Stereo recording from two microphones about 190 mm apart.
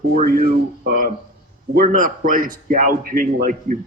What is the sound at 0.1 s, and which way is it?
Speech, 40° right (ahead or behind).